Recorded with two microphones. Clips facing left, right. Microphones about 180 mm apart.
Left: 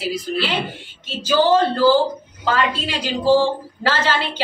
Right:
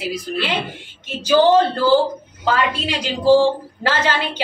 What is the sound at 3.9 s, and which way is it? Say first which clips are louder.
Speech: even; 15° right (ahead or behind).